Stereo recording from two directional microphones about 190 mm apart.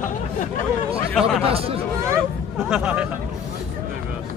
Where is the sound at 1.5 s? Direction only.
30° right (ahead or behind).